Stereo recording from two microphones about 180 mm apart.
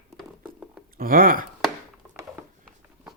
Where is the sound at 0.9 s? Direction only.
50° right (ahead or behind).